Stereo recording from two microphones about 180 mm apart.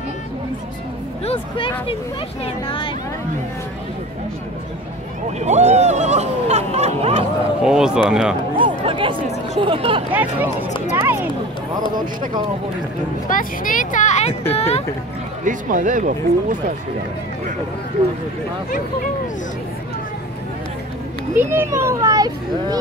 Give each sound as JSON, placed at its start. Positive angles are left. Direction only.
{"t": 1.2, "sound": "speech", "side_deg": 30}
{"t": 5.4, "sound": "speech", "side_deg": -40}
{"t": 7.6, "sound": "speech", "side_deg": -5}
{"t": 8.5, "sound": "speech", "side_deg": -30}
{"t": 10.1, "sound": "a child's voice", "side_deg": -10}
{"t": 13.3, "sound": "speech", "side_deg": 50}
{"t": 15.4, "sound": "speech", "side_deg": -45}
{"t": 21.4, "sound": "a child's voice", "side_deg": -15}